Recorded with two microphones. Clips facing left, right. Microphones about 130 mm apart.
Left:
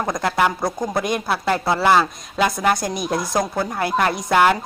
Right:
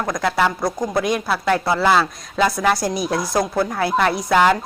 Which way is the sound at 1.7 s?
15° left (ahead or behind).